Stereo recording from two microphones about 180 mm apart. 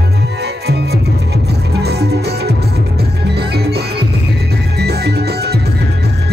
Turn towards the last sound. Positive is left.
turn(degrees=-65)  # may be behind; listen again after turning